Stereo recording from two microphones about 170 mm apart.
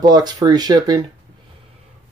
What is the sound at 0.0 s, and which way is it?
Speech, 25° right (ahead or behind).